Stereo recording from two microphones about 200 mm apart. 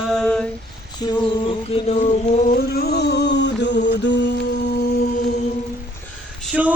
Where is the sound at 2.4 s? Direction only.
50° left (ahead or behind).